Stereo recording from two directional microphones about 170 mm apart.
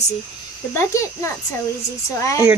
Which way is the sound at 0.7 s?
15° left (ahead or behind).